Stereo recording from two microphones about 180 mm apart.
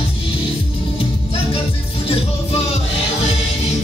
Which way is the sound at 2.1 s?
35° left (ahead or behind).